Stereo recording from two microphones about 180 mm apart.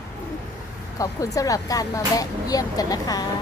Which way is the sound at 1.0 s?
20° left (ahead or behind).